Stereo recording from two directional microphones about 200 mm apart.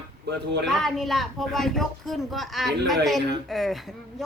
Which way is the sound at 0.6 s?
Centre (ahead or behind).